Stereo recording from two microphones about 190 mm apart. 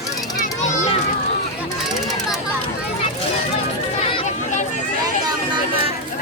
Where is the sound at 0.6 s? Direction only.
40° left (ahead or behind).